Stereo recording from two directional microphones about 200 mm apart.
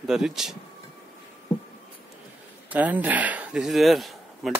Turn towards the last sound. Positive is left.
turn(degrees=0)  # may be behind; listen again after turning